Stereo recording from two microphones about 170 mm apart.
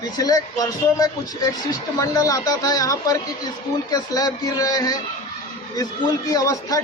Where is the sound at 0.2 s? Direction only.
20° left (ahead or behind).